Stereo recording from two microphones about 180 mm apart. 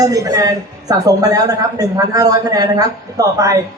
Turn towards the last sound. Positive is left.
turn(degrees=-20)  # may be behind; listen again after turning